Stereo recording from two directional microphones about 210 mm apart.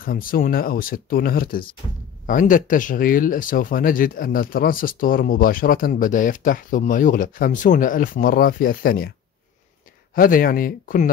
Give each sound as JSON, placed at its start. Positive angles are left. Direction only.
{"t": 0.0, "sound": "speech", "side_deg": 40}
{"t": 10.1, "sound": "speech", "side_deg": 45}